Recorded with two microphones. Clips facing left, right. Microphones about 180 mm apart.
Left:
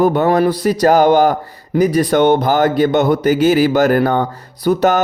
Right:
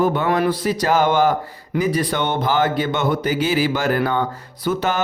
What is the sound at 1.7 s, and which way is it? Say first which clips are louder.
A man's voice: left 7 dB; 45° left (ahead or behind).